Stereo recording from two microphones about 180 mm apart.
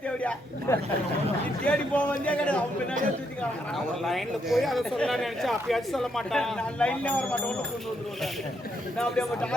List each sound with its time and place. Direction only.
0.2 s a sound: 5° left (ahead or behind)
1.6 s speech: 5° left (ahead or behind)
4.0 s speech: centre (ahead or behind)
9.0 s speech: 5° left (ahead or behind)